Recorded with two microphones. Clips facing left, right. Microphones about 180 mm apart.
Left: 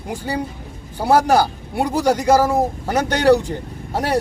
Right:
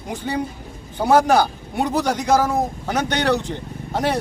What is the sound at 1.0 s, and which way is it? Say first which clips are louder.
Speech: even; 10° left (ahead or behind).